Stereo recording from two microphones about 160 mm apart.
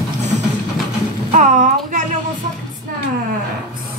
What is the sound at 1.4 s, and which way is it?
Speech, 50° right (ahead or behind).